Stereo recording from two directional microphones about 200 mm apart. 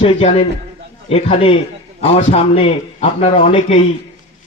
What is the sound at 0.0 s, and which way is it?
A man's voice, 30° left (ahead or behind).